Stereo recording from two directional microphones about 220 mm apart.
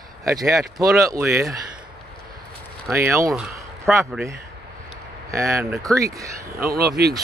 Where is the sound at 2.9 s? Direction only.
10° right (ahead or behind).